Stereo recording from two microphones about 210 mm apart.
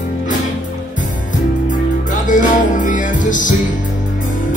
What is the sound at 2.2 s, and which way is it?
Music, 40° left (ahead or behind).